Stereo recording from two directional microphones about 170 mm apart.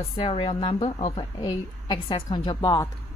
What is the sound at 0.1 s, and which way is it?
Speech, 35° left (ahead or behind).